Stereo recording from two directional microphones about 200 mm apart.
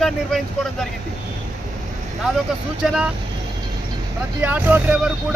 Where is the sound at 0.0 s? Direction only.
Centre (ahead or behind).